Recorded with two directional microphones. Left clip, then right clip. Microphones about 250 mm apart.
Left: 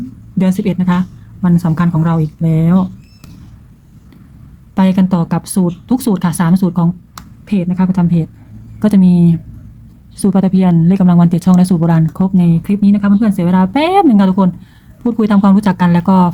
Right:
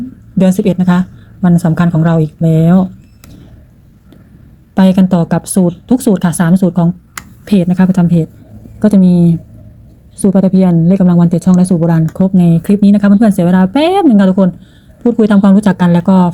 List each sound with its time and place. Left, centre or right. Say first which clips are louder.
0.3 s speech: right 5 dB; centre
4.7 s speech: right 4 dB; centre
7.4 s speech: right 5 dB; centre